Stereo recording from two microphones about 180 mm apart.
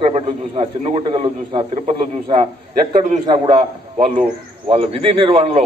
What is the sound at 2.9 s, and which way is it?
Speech, 45° right (ahead or behind).